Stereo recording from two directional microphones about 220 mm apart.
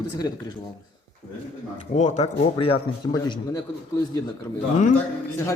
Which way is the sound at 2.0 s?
30° left (ahead or behind).